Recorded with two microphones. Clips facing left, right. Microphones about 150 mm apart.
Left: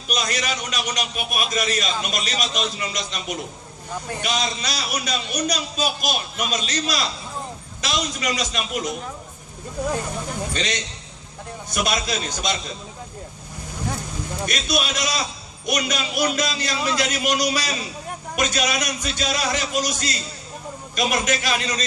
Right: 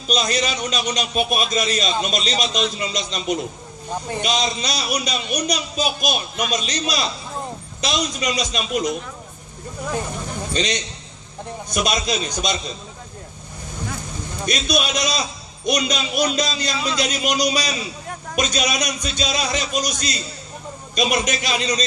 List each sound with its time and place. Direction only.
0.1 s a man's voice: 20° right (ahead or behind)
10.5 s a man's voice: 20° right (ahead or behind)
14.4 s a man's voice: 20° right (ahead or behind)